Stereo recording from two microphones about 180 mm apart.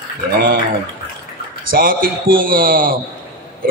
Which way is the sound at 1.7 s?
50° right (ahead or behind).